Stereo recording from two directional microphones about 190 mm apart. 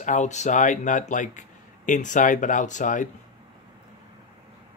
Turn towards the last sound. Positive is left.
turn(degrees=40)  # may be behind; listen again after turning